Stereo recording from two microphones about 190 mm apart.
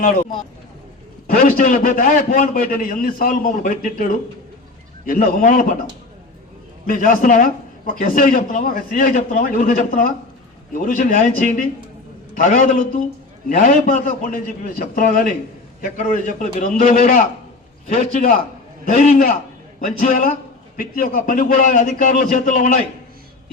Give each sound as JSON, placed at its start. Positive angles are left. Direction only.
{"t": 1.3, "sound": "a man's voice", "side_deg": 45}
{"t": 6.8, "sound": "a man's voice", "side_deg": 45}